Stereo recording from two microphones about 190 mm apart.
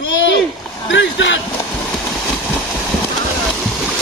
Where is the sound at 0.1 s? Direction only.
70° left (ahead or behind).